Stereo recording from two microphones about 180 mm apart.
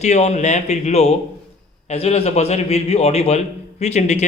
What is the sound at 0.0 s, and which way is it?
A man's voice, 40° left (ahead or behind).